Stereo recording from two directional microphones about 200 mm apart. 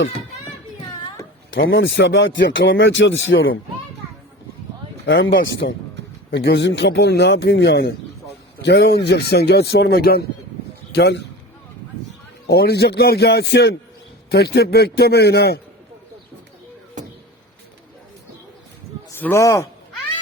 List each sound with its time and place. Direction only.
1.5 s speech: 70° left (ahead or behind)
5.0 s speech: 65° left (ahead or behind)
12.5 s a man's voice: 55° left (ahead or behind)
19.1 s speech: 10° left (ahead or behind)